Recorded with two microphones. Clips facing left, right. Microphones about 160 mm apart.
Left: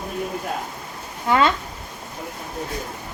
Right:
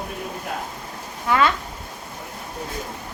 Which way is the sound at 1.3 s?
25° left (ahead or behind).